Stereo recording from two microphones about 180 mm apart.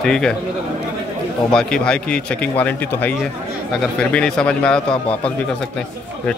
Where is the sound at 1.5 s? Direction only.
5° left (ahead or behind).